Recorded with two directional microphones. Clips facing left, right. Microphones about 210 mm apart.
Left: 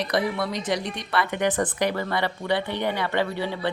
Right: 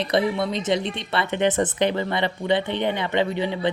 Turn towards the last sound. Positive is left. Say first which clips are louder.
# right 3 dB
turn(degrees=-20)  # may be behind; listen again after turning